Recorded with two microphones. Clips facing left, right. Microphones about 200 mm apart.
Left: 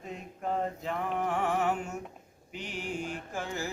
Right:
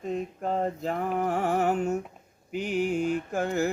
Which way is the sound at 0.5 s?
40° right (ahead or behind).